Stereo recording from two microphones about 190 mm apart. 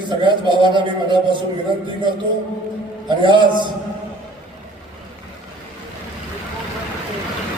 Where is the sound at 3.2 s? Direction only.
25° right (ahead or behind).